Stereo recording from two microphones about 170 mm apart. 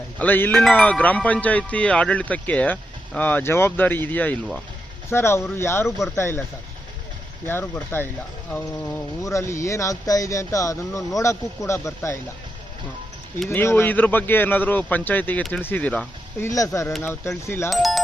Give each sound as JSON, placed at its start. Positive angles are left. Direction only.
{"t": 0.2, "sound": "speech", "side_deg": 10}
{"t": 7.4, "sound": "speech", "side_deg": 15}
{"t": 13.5, "sound": "speech", "side_deg": 15}
{"t": 16.5, "sound": "speech", "side_deg": 20}
{"t": 17.7, "sound": "speech", "side_deg": 0}